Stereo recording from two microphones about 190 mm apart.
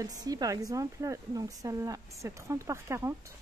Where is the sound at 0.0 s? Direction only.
20° right (ahead or behind).